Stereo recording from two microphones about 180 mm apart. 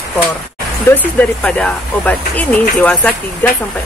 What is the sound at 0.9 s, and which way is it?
Speech, 15° left (ahead or behind).